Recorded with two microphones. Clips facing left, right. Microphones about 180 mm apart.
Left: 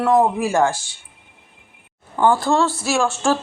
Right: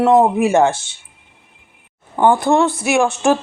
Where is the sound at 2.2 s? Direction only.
20° right (ahead or behind).